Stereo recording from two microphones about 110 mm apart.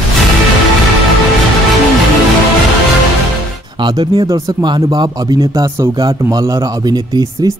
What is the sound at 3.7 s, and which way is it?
Speech, 45° right (ahead or behind).